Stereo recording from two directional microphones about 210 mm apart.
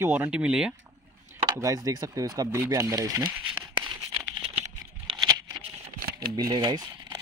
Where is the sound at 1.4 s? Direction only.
15° right (ahead or behind).